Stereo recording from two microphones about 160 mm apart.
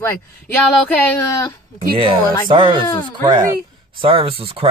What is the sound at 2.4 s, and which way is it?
Speech, 30° right (ahead or behind).